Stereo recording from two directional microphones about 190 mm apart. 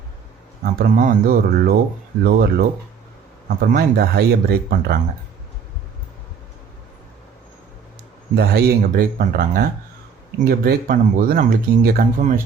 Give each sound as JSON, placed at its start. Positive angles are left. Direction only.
{"t": 0.6, "sound": "speech", "side_deg": -50}
{"t": 8.4, "sound": "speech", "side_deg": -50}